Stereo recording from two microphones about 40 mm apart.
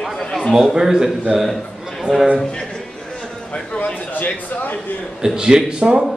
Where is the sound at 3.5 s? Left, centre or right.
Left.